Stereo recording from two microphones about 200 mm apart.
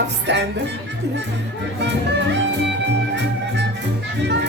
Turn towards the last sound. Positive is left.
turn(degrees=-60)  # may be behind; listen again after turning